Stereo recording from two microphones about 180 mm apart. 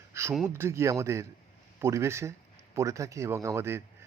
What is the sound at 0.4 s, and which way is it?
A man's voice, 15° right (ahead or behind).